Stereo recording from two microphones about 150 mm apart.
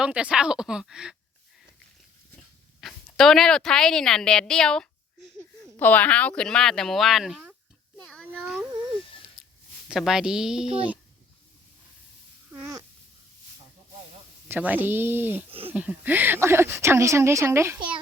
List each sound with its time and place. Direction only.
0.0 s speech: 5° right (ahead or behind)
2.8 s a woman's voice: centre (ahead or behind)
7.9 s a sound: 10° left (ahead or behind)
9.4 s a sound: centre (ahead or behind)
9.9 s speech: 5° right (ahead or behind)
14.4 s a woman's voice: 10° right (ahead or behind)
15.4 s speech: 40° right (ahead or behind)
15.7 s a woman's voice: 10° right (ahead or behind)